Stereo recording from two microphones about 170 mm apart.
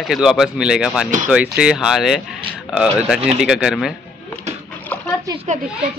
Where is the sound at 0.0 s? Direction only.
Centre (ahead or behind).